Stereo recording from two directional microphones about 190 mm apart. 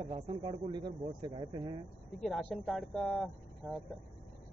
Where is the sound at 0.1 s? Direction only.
20° right (ahead or behind).